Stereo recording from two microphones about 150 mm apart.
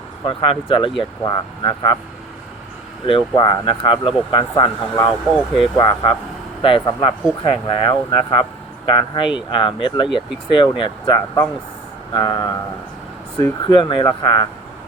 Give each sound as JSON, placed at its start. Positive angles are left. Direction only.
{"t": 0.3, "sound": "speech", "side_deg": 35}
{"t": 3.1, "sound": "speech", "side_deg": 35}
{"t": 12.1, "sound": "a sound", "side_deg": 25}
{"t": 13.3, "sound": "speech", "side_deg": 30}